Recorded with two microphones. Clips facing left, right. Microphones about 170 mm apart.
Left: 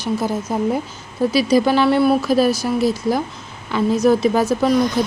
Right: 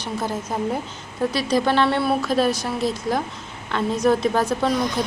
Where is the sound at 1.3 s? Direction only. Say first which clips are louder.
Left 6 dB; 5° left (ahead or behind).